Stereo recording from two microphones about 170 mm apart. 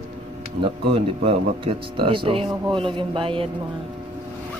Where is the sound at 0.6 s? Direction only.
35° right (ahead or behind).